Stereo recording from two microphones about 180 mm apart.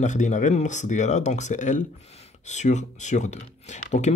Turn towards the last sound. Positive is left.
turn(degrees=40)  # may be behind; listen again after turning